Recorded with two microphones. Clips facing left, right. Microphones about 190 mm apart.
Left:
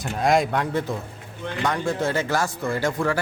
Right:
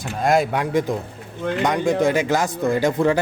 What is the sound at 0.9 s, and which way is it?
Speech, 15° right (ahead or behind).